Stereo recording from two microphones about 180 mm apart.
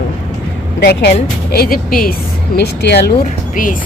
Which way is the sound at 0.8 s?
65° left (ahead or behind).